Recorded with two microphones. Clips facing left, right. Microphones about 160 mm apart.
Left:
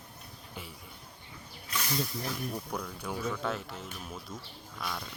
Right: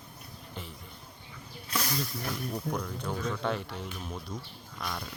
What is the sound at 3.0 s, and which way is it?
Speech, 10° left (ahead or behind).